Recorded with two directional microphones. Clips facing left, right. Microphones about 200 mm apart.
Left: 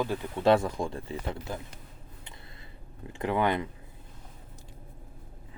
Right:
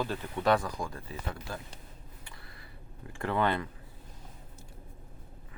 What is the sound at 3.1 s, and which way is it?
Speech, 15° left (ahead or behind).